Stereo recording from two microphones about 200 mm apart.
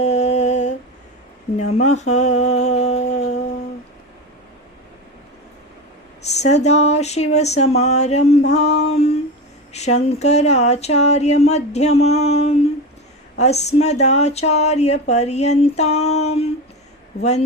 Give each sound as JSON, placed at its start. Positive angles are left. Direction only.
{"t": 0.0, "sound": "humming", "side_deg": 35}
{"t": 1.5, "sound": "a sound", "side_deg": 35}
{"t": 6.2, "sound": "speech", "side_deg": 35}
{"t": 8.9, "sound": "humming", "side_deg": 30}
{"t": 9.7, "sound": "speech", "side_deg": 35}